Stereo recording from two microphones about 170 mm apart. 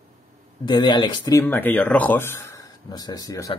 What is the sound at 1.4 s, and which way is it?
Speech, 10° left (ahead or behind).